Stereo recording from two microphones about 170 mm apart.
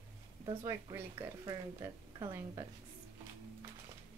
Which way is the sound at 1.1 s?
25° right (ahead or behind).